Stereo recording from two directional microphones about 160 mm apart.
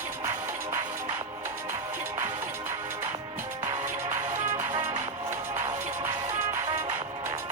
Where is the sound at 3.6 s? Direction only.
20° right (ahead or behind).